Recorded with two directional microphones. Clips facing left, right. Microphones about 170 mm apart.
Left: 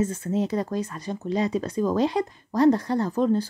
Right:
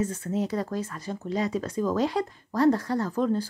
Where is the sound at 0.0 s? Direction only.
20° left (ahead or behind).